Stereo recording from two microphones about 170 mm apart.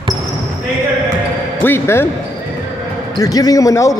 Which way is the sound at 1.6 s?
15° left (ahead or behind).